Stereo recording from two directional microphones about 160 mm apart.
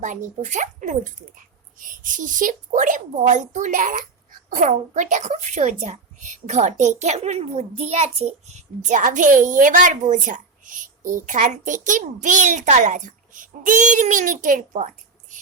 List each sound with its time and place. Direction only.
0.0 s a woman's voice: 50° right (ahead or behind)